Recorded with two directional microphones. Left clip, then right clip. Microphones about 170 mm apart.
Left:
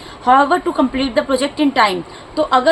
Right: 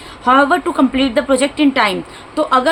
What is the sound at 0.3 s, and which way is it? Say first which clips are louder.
A woman's voice: even; 20° right (ahead or behind).